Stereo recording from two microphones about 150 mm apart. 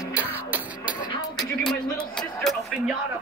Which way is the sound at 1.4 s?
5° left (ahead or behind).